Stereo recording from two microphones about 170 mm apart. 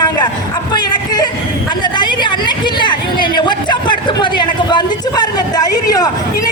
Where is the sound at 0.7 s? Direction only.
25° left (ahead or behind).